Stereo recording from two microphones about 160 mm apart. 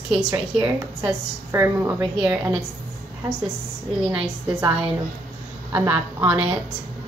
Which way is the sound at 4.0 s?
5° right (ahead or behind).